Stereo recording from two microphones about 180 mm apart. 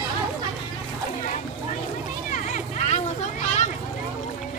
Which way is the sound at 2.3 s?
40° left (ahead or behind).